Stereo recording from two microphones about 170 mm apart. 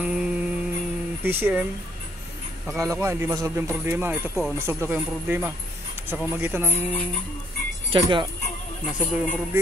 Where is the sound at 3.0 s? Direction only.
15° right (ahead or behind).